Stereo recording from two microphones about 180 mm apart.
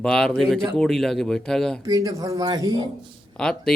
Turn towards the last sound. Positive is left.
turn(degrees=5)  # may be behind; listen again after turning